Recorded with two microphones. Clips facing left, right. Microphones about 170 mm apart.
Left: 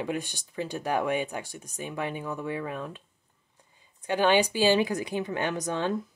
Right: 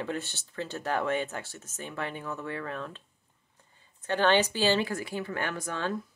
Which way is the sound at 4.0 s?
15° left (ahead or behind).